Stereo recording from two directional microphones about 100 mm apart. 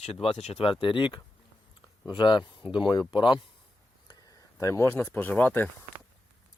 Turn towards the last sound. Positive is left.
turn(degrees=20)  # may be behind; listen again after turning